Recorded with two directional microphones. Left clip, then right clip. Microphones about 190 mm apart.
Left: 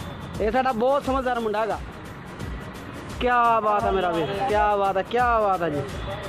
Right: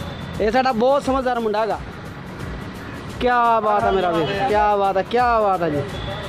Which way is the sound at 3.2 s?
5° right (ahead or behind).